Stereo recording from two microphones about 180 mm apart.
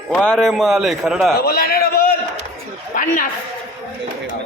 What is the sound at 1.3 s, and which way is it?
A man's voice, 60° left (ahead or behind).